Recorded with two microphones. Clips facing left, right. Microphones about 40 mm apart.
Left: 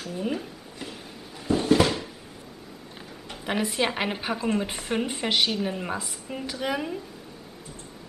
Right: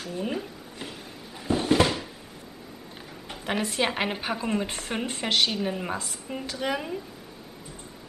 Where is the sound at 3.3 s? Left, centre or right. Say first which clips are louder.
Left 1 dB; centre.